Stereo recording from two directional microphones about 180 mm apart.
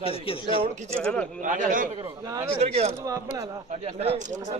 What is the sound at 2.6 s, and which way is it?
Speech, 35° right (ahead or behind).